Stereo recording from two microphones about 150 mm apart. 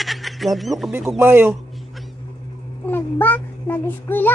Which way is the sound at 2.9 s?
15° left (ahead or behind).